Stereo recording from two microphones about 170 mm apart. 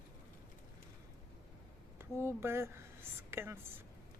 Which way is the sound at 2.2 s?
15° right (ahead or behind).